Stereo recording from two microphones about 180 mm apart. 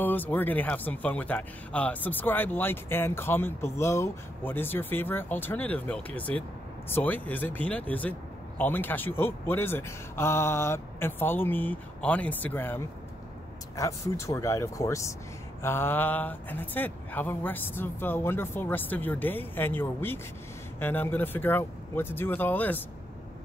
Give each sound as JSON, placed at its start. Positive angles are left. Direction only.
{"t": 0.0, "sound": "speech", "side_deg": 10}